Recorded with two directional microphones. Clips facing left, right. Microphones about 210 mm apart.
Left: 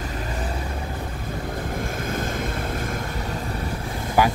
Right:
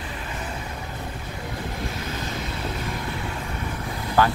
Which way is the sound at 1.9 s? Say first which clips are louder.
Left 4 dB; 50° left (ahead or behind).